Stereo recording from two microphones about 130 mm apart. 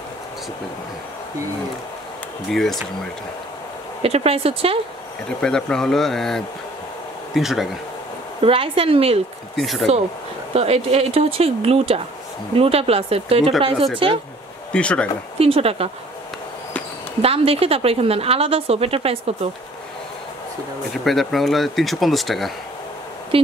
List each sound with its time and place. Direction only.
2.5 s speech: centre (ahead or behind)
4.0 s a woman's voice: 50° right (ahead or behind)
5.4 s speech: 5° left (ahead or behind)
8.4 s a woman's voice: 45° right (ahead or behind)
9.6 s speech: centre (ahead or behind)
10.5 s a woman's voice: 55° right (ahead or behind)
14.7 s speech: 10° left (ahead or behind)
15.3 s a woman's voice: 50° right (ahead or behind)
17.2 s a woman's voice: 50° right (ahead or behind)
20.9 s speech: centre (ahead or behind)
23.3 s speech: 45° right (ahead or behind)